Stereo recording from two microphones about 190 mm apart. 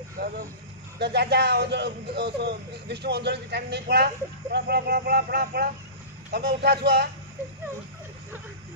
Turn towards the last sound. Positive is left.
turn(degrees=-60)  # may be behind; listen again after turning